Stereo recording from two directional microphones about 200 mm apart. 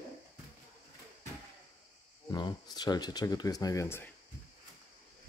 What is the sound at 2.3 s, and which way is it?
Speech, 20° left (ahead or behind).